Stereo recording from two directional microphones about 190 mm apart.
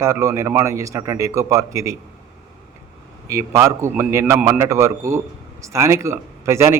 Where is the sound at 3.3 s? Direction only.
15° right (ahead or behind).